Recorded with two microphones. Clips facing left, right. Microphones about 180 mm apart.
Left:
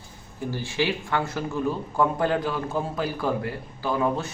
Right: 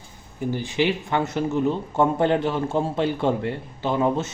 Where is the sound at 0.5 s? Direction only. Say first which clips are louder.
Right 3 dB; 20° right (ahead or behind).